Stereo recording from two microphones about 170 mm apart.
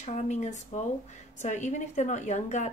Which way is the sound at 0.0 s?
45° left (ahead or behind).